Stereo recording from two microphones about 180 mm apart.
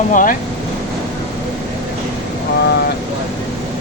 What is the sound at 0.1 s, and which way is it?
Speech, 45° left (ahead or behind).